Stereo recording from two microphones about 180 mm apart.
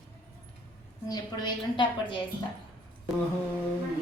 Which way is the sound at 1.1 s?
25° left (ahead or behind).